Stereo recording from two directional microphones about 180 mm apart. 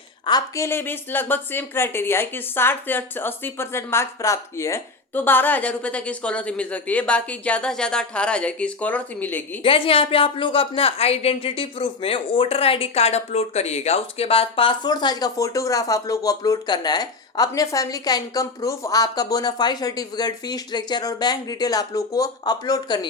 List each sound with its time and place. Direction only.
0.3 s a woman's voice: 20° left (ahead or behind)
9.6 s speech: 30° left (ahead or behind)